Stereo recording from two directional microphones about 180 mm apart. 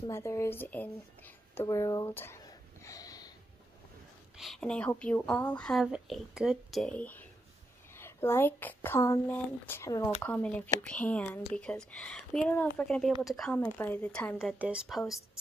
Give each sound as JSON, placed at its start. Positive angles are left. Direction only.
{"t": 0.1, "sound": "speech", "side_deg": 15}
{"t": 4.4, "sound": "a woman's voice", "side_deg": 0}
{"t": 14.4, "sound": "a woman's voice", "side_deg": -5}